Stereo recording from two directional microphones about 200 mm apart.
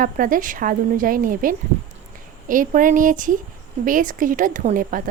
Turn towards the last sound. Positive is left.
turn(degrees=-45)  # may be behind; listen again after turning